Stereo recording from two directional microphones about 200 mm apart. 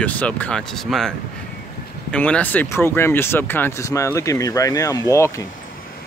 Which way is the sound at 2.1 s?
5° left (ahead or behind).